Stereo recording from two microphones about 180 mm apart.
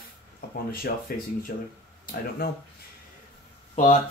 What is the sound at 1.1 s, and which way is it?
Speech, 55° left (ahead or behind).